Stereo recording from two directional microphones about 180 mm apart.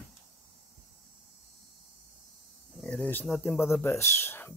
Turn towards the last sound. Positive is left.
turn(degrees=10)  # may be behind; listen again after turning